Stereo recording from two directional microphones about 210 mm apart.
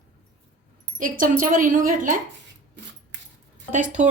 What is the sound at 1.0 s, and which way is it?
A woman's voice, 40° right (ahead or behind).